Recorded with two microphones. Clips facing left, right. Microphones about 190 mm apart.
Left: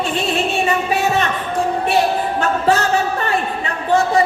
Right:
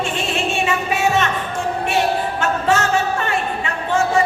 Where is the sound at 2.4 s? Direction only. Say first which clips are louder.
Left 3 dB; 35° left (ahead or behind).